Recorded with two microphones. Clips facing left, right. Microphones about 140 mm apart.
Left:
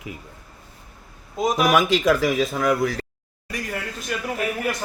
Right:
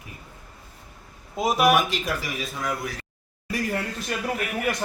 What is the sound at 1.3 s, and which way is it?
Speech, 5° right (ahead or behind).